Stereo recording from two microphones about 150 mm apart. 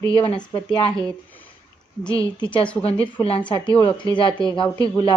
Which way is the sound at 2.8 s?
40° left (ahead or behind).